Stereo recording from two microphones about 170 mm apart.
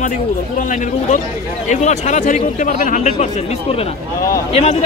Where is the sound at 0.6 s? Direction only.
50° left (ahead or behind).